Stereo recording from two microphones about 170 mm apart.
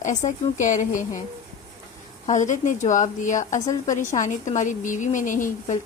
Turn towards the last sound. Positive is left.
turn(degrees=50)  # may be behind; listen again after turning